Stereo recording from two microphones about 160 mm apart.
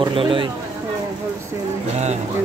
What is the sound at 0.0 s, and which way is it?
Speech, 35° right (ahead or behind).